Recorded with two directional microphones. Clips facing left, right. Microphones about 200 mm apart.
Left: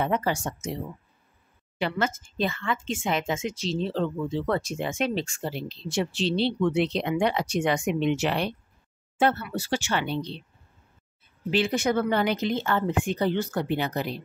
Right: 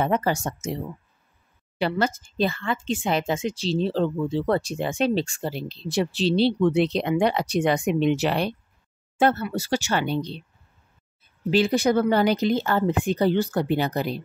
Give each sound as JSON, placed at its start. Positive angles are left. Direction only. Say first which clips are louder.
{"t": 0.0, "sound": "speech", "louder": "right 3 dB", "side_deg": -45}
{"t": 1.8, "sound": "speech", "louder": "right 3 dB", "side_deg": -35}
{"t": 11.5, "sound": "speech", "louder": "right 4 dB", "side_deg": -35}